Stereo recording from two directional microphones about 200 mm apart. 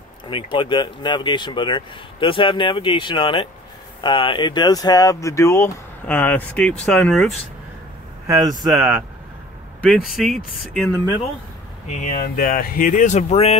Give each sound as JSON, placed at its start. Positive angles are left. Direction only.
{"t": 0.3, "sound": "speech", "side_deg": 25}
{"t": 8.3, "sound": "speech", "side_deg": -20}
{"t": 8.6, "sound": "speech", "side_deg": 0}
{"t": 11.9, "sound": "speech", "side_deg": 40}